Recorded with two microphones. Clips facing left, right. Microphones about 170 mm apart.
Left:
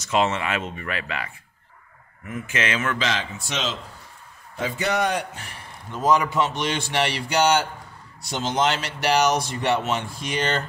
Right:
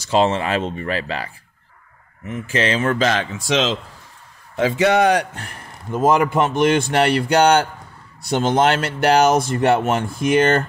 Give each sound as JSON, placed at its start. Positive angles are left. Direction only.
{"t": 0.0, "sound": "speech", "side_deg": -30}
{"t": 3.3, "sound": "speech", "side_deg": -90}
{"t": 5.4, "sound": "speech", "side_deg": -50}